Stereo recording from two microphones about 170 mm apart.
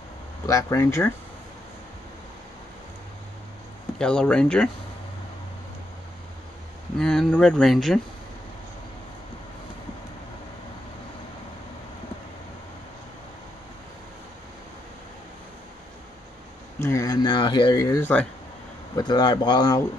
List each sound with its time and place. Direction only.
0.5 s speech: 20° left (ahead or behind)
4.0 s speech: 5° left (ahead or behind)
7.0 s speech: 5° left (ahead or behind)
16.8 s speech: 20° left (ahead or behind)
18.9 s speech: 25° left (ahead or behind)